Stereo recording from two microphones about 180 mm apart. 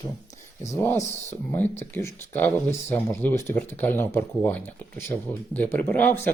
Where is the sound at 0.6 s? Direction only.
15° left (ahead or behind).